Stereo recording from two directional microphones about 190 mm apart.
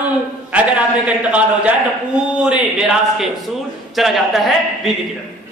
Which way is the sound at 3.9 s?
Centre (ahead or behind).